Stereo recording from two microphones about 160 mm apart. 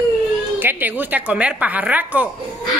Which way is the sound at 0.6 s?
10° right (ahead or behind).